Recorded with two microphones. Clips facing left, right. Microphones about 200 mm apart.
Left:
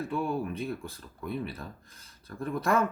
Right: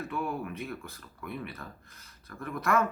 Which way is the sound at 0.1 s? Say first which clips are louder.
Left 4 dB; 30° left (ahead or behind).